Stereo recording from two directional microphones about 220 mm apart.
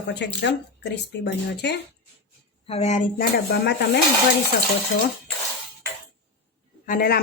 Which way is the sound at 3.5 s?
50° left (ahead or behind).